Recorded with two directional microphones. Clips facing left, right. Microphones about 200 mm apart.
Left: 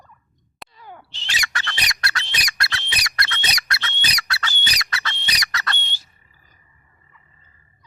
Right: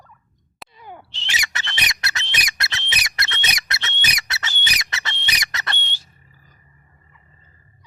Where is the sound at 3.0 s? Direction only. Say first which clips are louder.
Left 3 dB; 25° right (ahead or behind).